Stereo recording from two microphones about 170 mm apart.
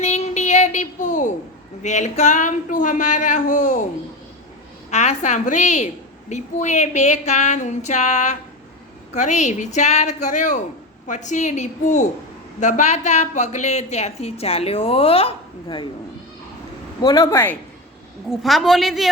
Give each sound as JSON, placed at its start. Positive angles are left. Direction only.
{"t": 0.0, "sound": "a sound", "side_deg": 40}
{"t": 1.8, "sound": "a woman's voice", "side_deg": 45}
{"t": 4.9, "sound": "a woman's voice", "side_deg": 40}
{"t": 17.0, "sound": "speech", "side_deg": 20}
{"t": 18.3, "sound": "a woman's voice", "side_deg": 0}